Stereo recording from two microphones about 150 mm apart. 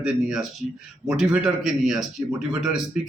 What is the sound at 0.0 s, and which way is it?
A man's voice, 5° right (ahead or behind).